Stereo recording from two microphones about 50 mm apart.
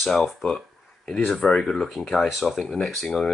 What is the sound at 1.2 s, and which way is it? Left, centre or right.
Speech, left.